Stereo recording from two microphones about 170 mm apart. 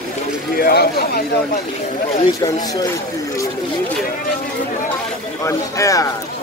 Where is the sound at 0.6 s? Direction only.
65° left (ahead or behind).